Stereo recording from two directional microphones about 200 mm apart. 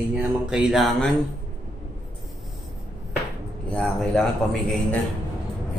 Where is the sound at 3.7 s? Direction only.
5° left (ahead or behind).